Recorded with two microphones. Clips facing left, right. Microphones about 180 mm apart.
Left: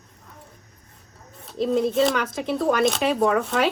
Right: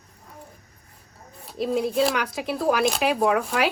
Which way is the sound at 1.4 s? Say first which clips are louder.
Left 3 dB; 5° right (ahead or behind).